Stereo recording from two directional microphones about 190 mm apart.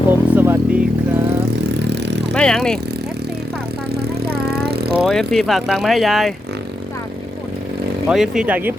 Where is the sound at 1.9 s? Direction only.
65° right (ahead or behind).